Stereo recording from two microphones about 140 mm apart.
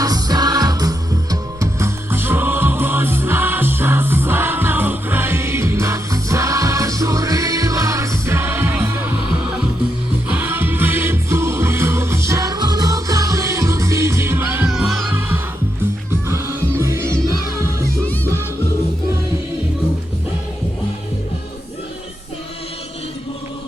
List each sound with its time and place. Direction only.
0.0 s music: 25° right (ahead or behind)
10.2 s music: 15° right (ahead or behind)
14.7 s music: centre (ahead or behind)
16.3 s music: 20° right (ahead or behind)